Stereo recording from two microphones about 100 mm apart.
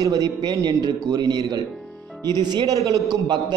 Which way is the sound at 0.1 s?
40° right (ahead or behind).